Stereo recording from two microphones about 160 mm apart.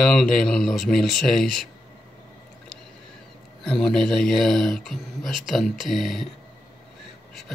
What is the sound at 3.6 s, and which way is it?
Speech, 5° left (ahead or behind).